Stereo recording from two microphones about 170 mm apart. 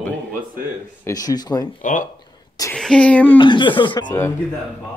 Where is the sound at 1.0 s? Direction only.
20° left (ahead or behind).